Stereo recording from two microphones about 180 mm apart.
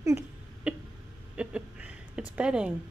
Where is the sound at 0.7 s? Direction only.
5° right (ahead or behind).